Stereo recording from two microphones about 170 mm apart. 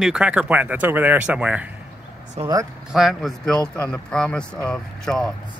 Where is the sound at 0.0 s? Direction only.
5° right (ahead or behind).